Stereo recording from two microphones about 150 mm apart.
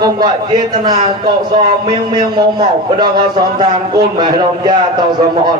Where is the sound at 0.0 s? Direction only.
30° right (ahead or behind).